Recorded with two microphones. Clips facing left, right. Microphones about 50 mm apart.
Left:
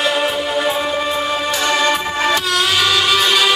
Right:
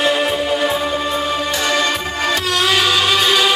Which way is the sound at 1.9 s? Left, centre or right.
Centre.